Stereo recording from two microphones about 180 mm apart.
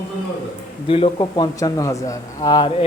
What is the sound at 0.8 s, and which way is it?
A man's voice, 30° left (ahead or behind).